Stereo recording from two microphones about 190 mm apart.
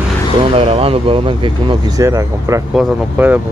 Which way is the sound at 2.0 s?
15° right (ahead or behind).